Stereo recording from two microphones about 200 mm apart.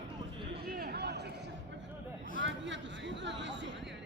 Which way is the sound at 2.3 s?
65° right (ahead or behind).